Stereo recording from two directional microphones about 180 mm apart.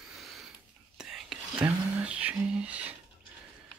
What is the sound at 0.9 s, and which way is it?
Whispering, 5° right (ahead or behind).